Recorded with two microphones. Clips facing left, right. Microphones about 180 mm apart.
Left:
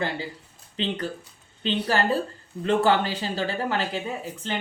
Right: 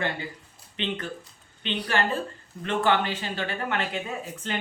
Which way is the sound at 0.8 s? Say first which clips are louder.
Left 3 dB; 35° left (ahead or behind).